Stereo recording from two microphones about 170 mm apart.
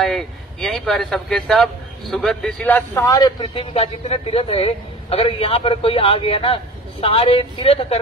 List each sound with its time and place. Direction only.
0.0 s speech: centre (ahead or behind); by 3.6 s 25° left (ahead or behind)
3.7 s a man's voice: 35° left (ahead or behind)